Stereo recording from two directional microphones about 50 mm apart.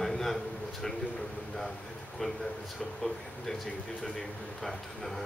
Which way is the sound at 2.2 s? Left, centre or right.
Centre.